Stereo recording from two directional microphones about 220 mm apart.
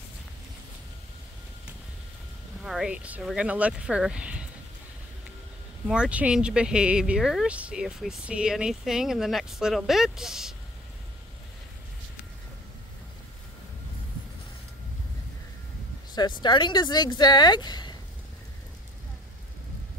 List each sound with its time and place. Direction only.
2.6 s speech: 5° right (ahead or behind)
5.9 s speech: 5° right (ahead or behind)
16.2 s speech: 20° left (ahead or behind)